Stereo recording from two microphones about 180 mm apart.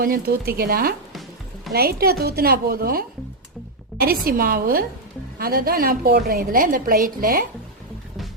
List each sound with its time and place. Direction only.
0.0 s a woman's voice: 55° right (ahead or behind)